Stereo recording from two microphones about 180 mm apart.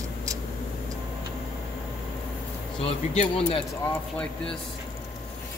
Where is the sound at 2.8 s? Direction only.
35° left (ahead or behind).